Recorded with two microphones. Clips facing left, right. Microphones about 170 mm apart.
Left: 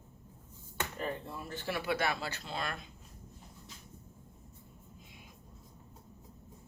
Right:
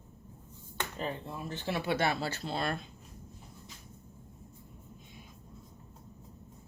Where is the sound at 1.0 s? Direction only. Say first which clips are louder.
Right 2 dB; 20° right (ahead or behind).